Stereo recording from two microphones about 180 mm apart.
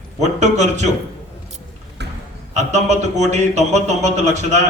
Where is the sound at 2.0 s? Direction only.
70° right (ahead or behind).